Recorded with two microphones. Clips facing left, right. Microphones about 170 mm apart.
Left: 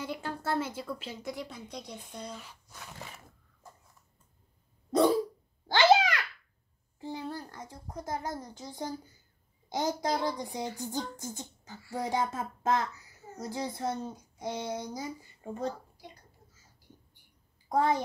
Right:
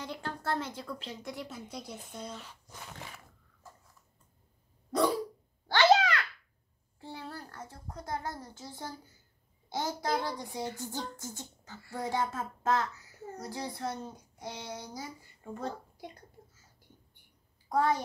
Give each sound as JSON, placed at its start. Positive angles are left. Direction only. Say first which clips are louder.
{"t": 0.0, "sound": "a woman's voice", "louder": "left 2 dB", "side_deg": 5}
{"t": 5.8, "sound": "babbling", "louder": "left 1 dB", "side_deg": 15}
{"t": 7.0, "sound": "a child's voice", "louder": "left 5 dB", "side_deg": 15}
{"t": 17.6, "sound": "a child's voice", "louder": "left 1 dB", "side_deg": 20}